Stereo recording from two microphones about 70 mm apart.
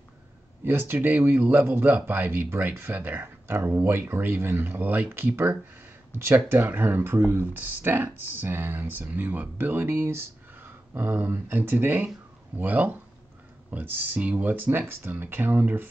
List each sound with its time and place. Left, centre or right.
0.7 s speech: right